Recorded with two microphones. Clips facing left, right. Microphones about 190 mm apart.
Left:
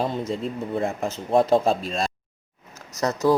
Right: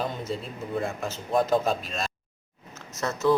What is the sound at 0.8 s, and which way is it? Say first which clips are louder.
Speech: left 3 dB; 30° left (ahead or behind).